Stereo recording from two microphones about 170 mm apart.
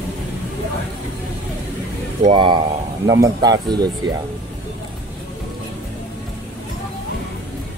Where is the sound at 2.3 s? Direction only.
25° right (ahead or behind).